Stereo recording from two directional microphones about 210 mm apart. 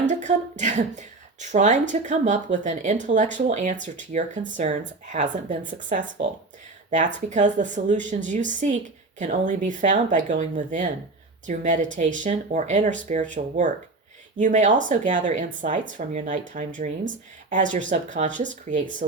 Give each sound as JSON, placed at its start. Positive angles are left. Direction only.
{"t": 0.0, "sound": "speech", "side_deg": -35}